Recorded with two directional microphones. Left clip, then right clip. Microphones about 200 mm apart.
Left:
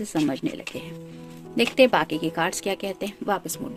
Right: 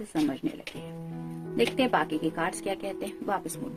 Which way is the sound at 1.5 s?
45° left (ahead or behind).